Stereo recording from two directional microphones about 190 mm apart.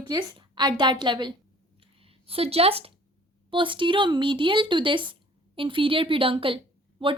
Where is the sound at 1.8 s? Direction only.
30° right (ahead or behind).